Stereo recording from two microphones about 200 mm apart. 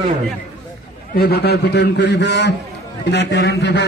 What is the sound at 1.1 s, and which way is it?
A man's voice, 50° left (ahead or behind).